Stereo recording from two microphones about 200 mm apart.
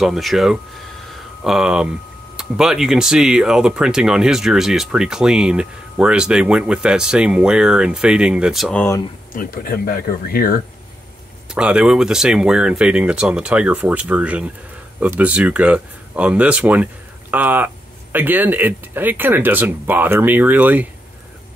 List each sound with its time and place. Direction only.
0.0 s speech: centre (ahead or behind)
9.3 s speech: 45° left (ahead or behind)
11.5 s speech: 5° right (ahead or behind)